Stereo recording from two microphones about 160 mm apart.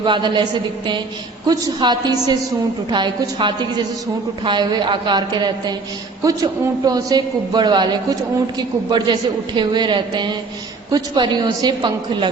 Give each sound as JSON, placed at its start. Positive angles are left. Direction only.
{"t": 0.0, "sound": "a man's voice", "side_deg": -30}
{"t": 1.5, "sound": "a man's voice", "side_deg": -25}